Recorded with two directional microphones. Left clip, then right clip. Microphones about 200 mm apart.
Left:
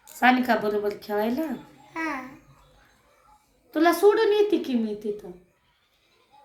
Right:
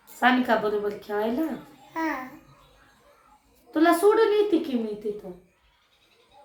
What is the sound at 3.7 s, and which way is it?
A child's voice, 20° left (ahead or behind).